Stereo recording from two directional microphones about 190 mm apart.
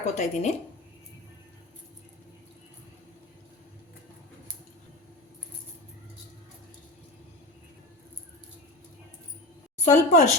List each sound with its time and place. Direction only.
0.0 s speech: 40° left (ahead or behind)
9.8 s speech: 40° left (ahead or behind)